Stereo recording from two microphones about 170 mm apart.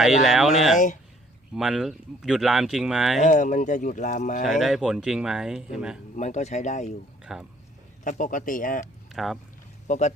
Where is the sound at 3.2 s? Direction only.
45° left (ahead or behind).